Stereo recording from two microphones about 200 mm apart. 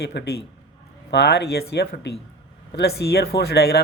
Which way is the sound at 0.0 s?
55° left (ahead or behind).